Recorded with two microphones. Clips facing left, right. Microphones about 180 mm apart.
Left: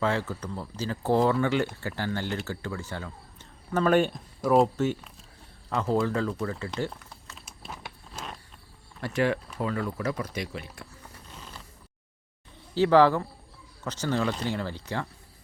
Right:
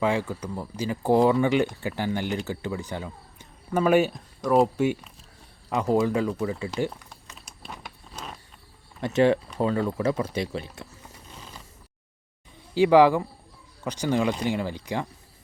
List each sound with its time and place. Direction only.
0.0 s speech: 15° right (ahead or behind)
4.8 s speech: 15° right (ahead or behind)
7.3 s a sound: centre (ahead or behind)
9.0 s speech: 20° right (ahead or behind)
12.7 s speech: 15° right (ahead or behind)